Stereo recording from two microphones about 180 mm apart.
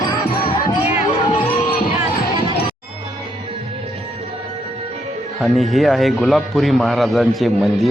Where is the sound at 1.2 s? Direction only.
30° left (ahead or behind).